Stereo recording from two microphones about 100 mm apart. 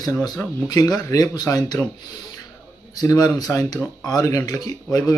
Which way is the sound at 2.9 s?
40° left (ahead or behind).